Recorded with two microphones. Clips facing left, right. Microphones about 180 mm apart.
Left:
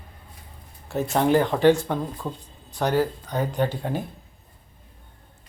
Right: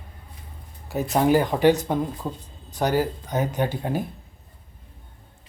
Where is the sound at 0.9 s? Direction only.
Centre (ahead or behind).